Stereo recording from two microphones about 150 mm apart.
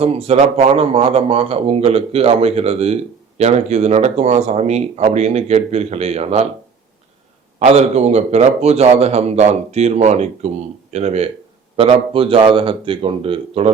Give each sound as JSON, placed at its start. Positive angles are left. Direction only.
{"t": 0.0, "sound": "speech", "side_deg": -40}
{"t": 7.6, "sound": "a man's voice", "side_deg": -45}